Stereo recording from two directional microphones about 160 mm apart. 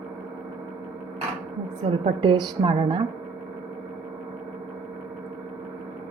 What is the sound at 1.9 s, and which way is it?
Speech, 45° right (ahead or behind).